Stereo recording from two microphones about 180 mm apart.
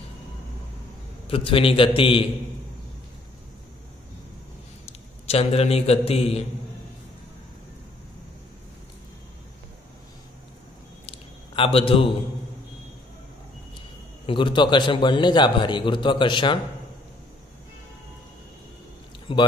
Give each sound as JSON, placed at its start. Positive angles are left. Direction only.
{"t": 1.2, "sound": "a man's voice", "side_deg": 30}
{"t": 4.8, "sound": "a man's voice", "side_deg": 35}
{"t": 11.1, "sound": "a sound", "side_deg": 30}
{"t": 14.2, "sound": "a man's voice", "side_deg": 25}
{"t": 19.3, "sound": "a man's voice", "side_deg": 30}